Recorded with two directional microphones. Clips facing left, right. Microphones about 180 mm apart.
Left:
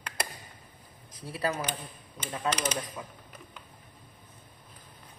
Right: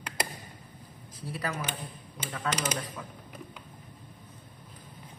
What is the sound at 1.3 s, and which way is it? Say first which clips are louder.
Speech: left 4 dB; 30° left (ahead or behind).